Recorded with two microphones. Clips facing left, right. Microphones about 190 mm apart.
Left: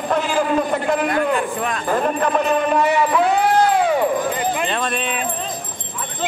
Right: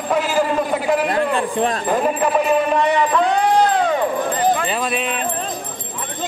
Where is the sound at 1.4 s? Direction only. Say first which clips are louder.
Right 3 dB; 30° right (ahead or behind).